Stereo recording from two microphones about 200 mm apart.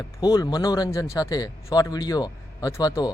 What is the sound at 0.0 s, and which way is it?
Speech, 20° left (ahead or behind).